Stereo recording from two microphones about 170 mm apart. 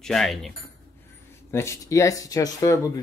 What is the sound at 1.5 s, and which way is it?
Speech, 15° left (ahead or behind).